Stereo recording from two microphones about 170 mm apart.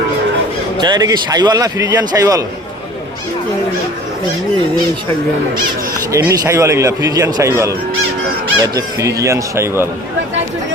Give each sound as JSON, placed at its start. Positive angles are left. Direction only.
{"t": 0.8, "sound": "speech", "side_deg": -25}
{"t": 6.1, "sound": "speech", "side_deg": -15}